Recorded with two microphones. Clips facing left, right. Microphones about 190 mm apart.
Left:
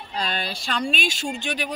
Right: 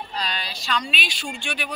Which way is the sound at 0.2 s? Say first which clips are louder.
Left 6 dB; 50° left (ahead or behind).